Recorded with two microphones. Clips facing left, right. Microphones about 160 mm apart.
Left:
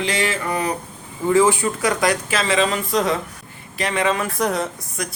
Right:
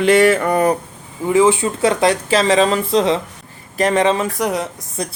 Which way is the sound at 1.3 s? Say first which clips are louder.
Right 3 dB; 20° right (ahead or behind).